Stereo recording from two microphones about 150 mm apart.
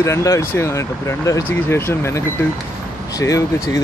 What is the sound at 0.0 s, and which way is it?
Speech, 20° left (ahead or behind).